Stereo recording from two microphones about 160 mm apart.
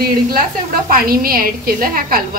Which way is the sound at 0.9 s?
65° right (ahead or behind).